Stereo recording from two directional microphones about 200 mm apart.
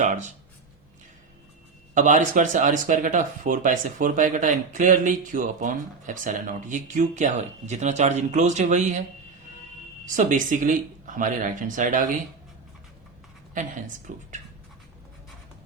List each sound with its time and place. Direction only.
0.0 s speech: 35° right (ahead or behind)
2.0 s speech: 40° right (ahead or behind)
10.2 s speech: 40° right (ahead or behind)
13.5 s a woman's voice: 40° right (ahead or behind)